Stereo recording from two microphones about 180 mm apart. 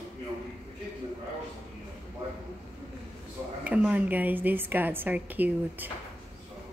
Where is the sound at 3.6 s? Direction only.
5° right (ahead or behind).